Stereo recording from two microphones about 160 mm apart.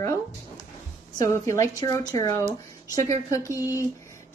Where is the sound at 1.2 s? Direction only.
20° left (ahead or behind).